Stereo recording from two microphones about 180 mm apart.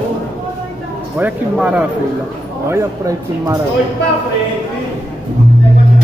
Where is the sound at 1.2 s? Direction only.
5° right (ahead or behind).